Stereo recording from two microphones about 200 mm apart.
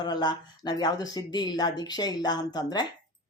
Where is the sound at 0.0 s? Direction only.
20° left (ahead or behind).